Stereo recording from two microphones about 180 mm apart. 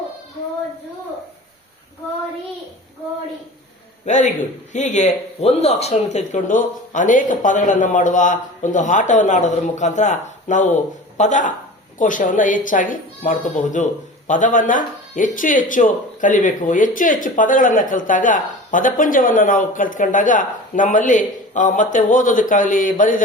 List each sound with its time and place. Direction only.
4.0 s a man's voice: 40° left (ahead or behind)